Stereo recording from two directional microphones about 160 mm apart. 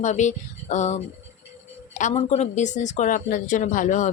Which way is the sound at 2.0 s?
45° left (ahead or behind).